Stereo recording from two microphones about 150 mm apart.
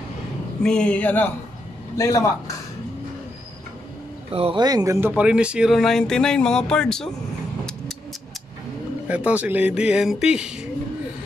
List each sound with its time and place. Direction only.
0.6 s a man's voice: 5° left (ahead or behind); by 2.5 s 20° left (ahead or behind)
4.3 s speech: 40° right (ahead or behind)
4.6 s a man's voice: 25° right (ahead or behind)
5.0 s speech: 10° right (ahead or behind)
9.0 s speech: 10° right (ahead or behind)